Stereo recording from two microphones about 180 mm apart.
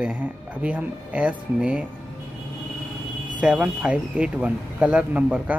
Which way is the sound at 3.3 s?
5° right (ahead or behind).